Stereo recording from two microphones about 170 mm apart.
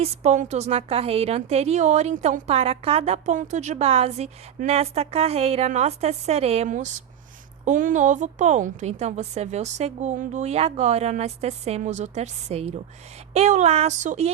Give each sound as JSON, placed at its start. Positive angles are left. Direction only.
{"t": 0.0, "sound": "a woman's voice", "side_deg": -40}